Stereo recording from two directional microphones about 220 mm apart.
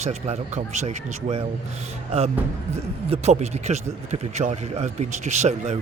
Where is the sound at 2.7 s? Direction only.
30° right (ahead or behind).